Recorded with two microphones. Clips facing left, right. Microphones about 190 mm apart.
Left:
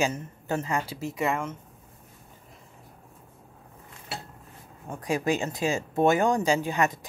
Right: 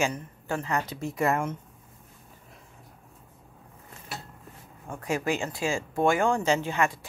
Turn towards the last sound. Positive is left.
turn(degrees=20)  # may be behind; listen again after turning